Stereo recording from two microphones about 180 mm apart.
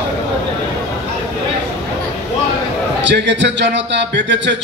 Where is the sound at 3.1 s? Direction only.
80° right.